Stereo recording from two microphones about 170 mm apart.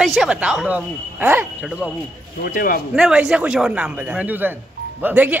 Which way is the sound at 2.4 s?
60° left (ahead or behind).